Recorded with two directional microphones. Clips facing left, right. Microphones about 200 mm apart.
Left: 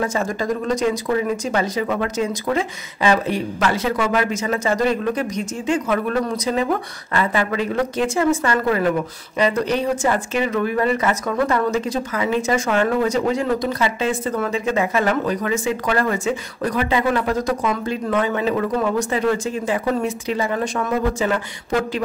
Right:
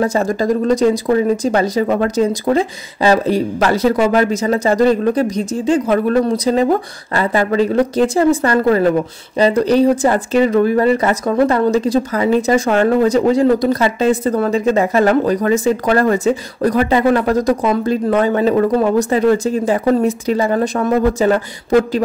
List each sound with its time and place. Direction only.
0.0 s a woman's voice: 35° right (ahead or behind)